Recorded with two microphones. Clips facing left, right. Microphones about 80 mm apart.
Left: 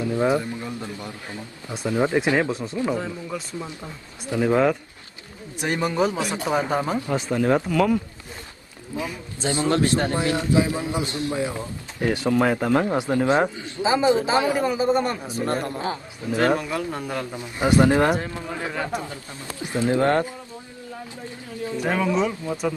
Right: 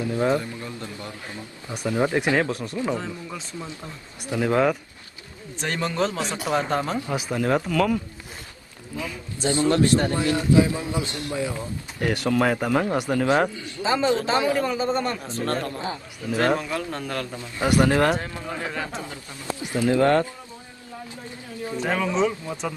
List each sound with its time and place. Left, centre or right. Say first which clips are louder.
0.0 s a man's voice: left 1 dB; left
2.9 s speech: left 2 dB; centre
3.5 s a man's voice: left 2 dB; centre
4.5 s speech: left 1 dB; centre
5.6 s speech: left 3 dB; centre
7.1 s speech: left 3 dB; centre
7.3 s speech: left 2 dB; centre
8.9 s a man's voice: left 2 dB; left
16.3 s speech: left 1 dB; centre
19.7 s a man's voice: right 1 dB; left
21.9 s speech: even; centre